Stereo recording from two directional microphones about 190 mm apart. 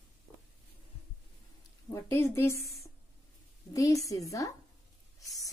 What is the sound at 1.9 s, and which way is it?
Speech, 15° left (ahead or behind).